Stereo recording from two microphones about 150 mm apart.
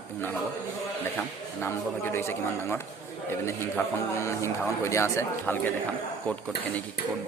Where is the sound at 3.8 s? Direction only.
15° left (ahead or behind).